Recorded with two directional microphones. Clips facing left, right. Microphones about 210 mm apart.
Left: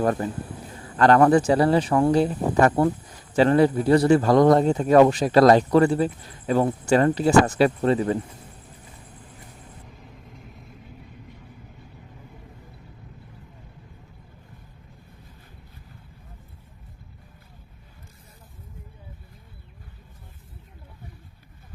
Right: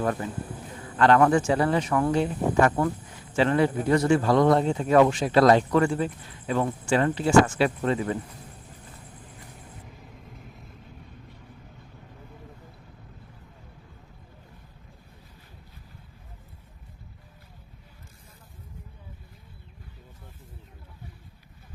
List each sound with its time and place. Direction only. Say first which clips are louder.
0.0 s speech: left 4 dB; 40° left (ahead or behind)